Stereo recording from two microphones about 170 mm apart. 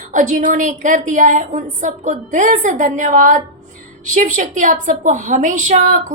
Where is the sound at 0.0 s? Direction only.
50° right (ahead or behind).